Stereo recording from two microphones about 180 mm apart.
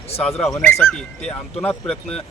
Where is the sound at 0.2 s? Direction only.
5° left (ahead or behind).